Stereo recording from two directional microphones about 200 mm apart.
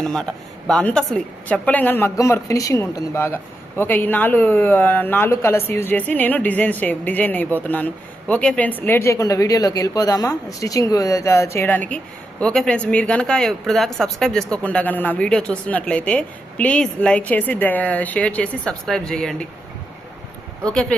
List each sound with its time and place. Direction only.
0.0 s speech: 5° left (ahead or behind)